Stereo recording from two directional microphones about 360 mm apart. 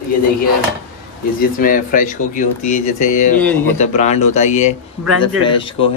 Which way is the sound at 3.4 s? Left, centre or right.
Centre.